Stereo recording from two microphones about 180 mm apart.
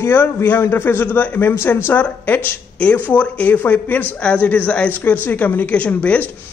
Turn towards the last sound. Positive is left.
turn(degrees=5)  # may be behind; listen again after turning